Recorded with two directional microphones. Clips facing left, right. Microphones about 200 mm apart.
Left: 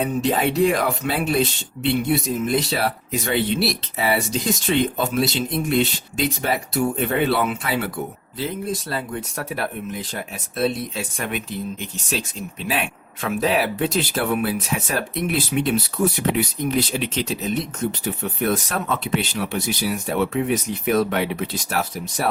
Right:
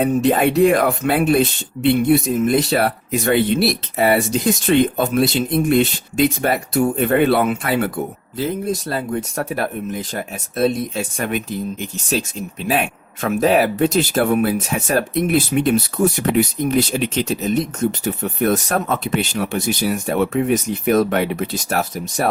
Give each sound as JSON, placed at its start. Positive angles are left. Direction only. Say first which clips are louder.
{"t": 0.0, "sound": "speech", "louder": "right 5 dB", "side_deg": -50}
{"t": 8.9, "sound": "speech", "louder": "right 5 dB", "side_deg": -45}
{"t": 12.6, "sound": "speech", "louder": "right 6 dB", "side_deg": -45}